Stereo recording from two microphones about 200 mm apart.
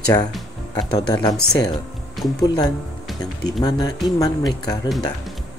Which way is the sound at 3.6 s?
20° left (ahead or behind).